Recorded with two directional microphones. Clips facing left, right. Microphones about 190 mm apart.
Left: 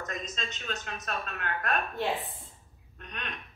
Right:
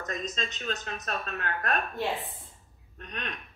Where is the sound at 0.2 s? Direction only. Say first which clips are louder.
Right 4 dB; 35° right (ahead or behind).